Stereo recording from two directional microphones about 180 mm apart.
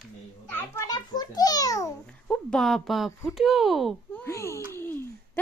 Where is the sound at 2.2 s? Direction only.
5° left (ahead or behind).